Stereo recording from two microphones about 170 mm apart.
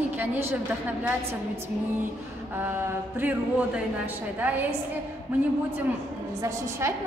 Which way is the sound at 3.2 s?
10° right (ahead or behind).